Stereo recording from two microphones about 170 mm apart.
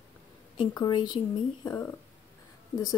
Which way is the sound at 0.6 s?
25° left (ahead or behind).